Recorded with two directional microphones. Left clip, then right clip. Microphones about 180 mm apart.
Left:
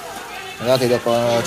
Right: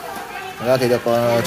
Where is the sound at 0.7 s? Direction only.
10° right (ahead or behind).